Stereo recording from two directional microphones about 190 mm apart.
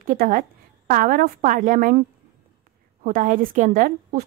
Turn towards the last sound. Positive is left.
turn(degrees=-45)  # may be behind; listen again after turning